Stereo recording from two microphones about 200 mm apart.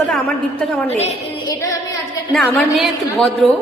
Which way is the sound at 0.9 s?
30° left (ahead or behind).